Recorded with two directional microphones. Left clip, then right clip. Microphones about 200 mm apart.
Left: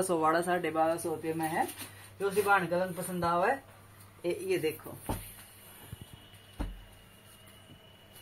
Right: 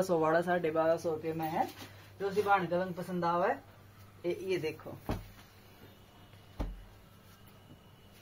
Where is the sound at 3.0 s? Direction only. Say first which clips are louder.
Left 2 dB; 20° left (ahead or behind).